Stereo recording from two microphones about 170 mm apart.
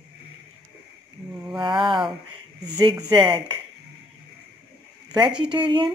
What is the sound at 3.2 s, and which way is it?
Speech, 30° right (ahead or behind).